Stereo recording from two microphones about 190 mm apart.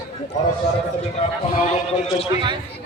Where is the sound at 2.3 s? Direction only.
25° right (ahead or behind).